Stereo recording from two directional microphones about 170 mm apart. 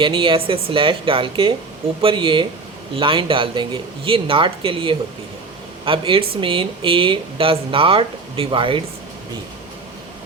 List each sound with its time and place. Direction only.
0.0 s speech: 30° right (ahead or behind)